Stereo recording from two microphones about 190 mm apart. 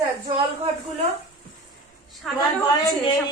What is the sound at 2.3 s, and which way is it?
Speech, centre (ahead or behind).